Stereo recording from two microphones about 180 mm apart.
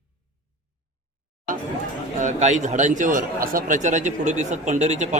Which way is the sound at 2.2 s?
40° right (ahead or behind).